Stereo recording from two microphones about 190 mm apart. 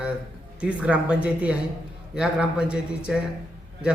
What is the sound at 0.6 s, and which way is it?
A man's voice, 5° right (ahead or behind).